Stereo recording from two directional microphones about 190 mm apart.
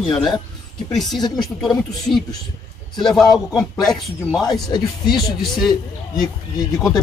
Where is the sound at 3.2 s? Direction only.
Centre (ahead or behind).